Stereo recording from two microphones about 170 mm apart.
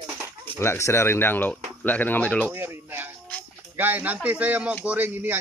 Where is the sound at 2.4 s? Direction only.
15° right (ahead or behind).